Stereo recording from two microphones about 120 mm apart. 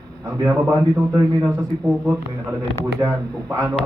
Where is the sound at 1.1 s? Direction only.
25° right (ahead or behind).